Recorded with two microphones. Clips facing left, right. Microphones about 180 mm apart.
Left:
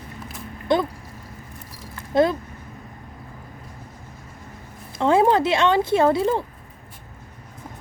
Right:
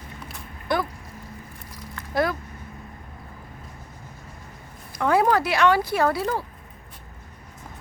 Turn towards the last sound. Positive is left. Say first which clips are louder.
# left 5 dB
turn(degrees=25)  # may be behind; listen again after turning